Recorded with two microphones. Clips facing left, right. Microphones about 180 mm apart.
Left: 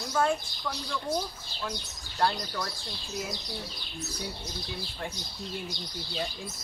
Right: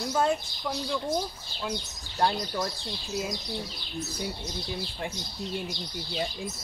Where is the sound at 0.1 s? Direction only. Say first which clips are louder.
Even; 20° right (ahead or behind).